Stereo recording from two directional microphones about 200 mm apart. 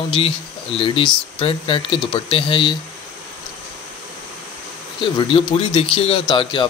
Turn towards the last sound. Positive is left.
turn(degrees=25)  # may be behind; listen again after turning